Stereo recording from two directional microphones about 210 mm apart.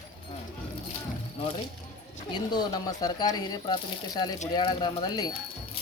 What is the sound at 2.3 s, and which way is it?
Speech, 20° left (ahead or behind).